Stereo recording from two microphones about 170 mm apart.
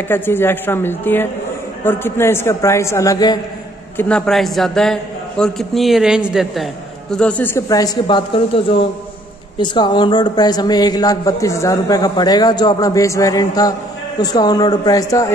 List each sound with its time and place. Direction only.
0.1 s a woman's voice: 15° left (ahead or behind)
4.3 s a man's voice: centre (ahead or behind); by 15.3 s 20° left (ahead or behind)